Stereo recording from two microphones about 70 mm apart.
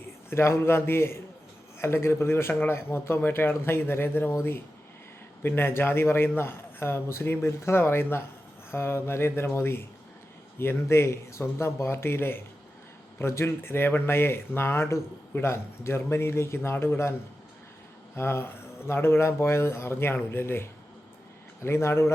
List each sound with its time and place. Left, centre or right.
0.3 s speech: left